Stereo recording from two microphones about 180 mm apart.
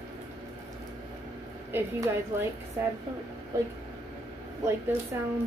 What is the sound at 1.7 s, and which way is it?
Speech, 15° right (ahead or behind).